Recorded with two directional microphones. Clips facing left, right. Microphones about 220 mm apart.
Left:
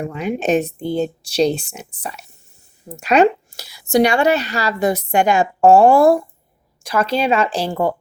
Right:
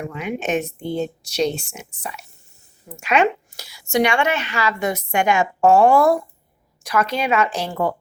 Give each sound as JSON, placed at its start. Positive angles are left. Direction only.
{"t": 0.1, "sound": "a woman's voice", "side_deg": 35}